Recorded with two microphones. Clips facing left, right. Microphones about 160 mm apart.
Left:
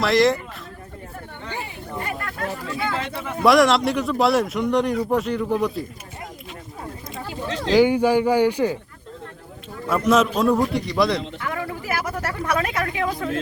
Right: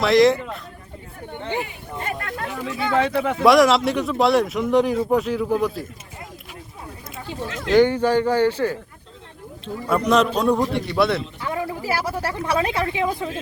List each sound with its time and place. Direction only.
0.0 s a man's voice: centre (ahead or behind)
1.3 s chatter: 20° right (ahead or behind)
3.4 s a man's voice: centre (ahead or behind)
7.4 s a sound: 30° left (ahead or behind)
7.7 s speech: 10° left (ahead or behind)
9.9 s a man's voice: centre (ahead or behind)
11.3 s speech: 25° right (ahead or behind)